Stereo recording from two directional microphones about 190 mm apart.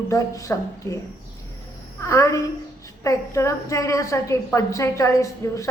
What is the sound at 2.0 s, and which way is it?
A woman's voice, 15° left (ahead or behind).